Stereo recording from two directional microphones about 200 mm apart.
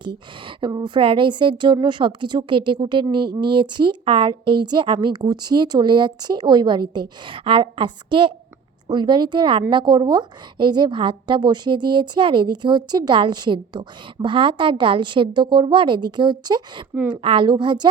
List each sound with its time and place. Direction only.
0.4 s a woman's voice: 20° right (ahead or behind)
16.9 s a woman's voice: 5° right (ahead or behind)
17.2 s a woman's voice: 25° right (ahead or behind)